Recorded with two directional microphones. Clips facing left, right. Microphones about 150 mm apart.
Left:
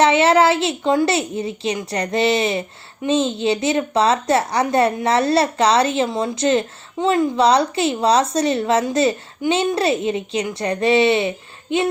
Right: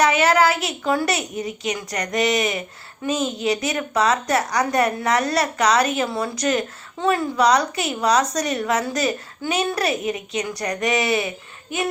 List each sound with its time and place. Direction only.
0.0 s a woman's voice: 25° left (ahead or behind)